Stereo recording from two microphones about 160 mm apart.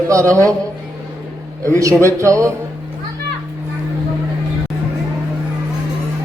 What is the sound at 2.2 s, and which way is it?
Speech, 20° right (ahead or behind).